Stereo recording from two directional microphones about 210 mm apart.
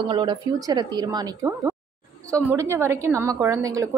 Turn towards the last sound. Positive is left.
turn(degrees=-15)  # may be behind; listen again after turning